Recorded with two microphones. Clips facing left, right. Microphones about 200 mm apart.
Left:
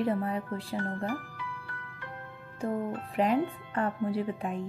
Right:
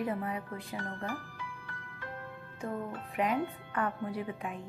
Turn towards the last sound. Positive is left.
turn(degrees=30)  # may be behind; listen again after turning